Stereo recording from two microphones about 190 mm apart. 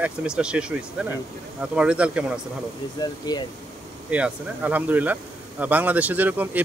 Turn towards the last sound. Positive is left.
turn(degrees=-10)  # may be behind; listen again after turning